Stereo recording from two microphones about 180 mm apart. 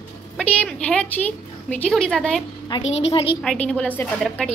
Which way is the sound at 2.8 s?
35° left (ahead or behind).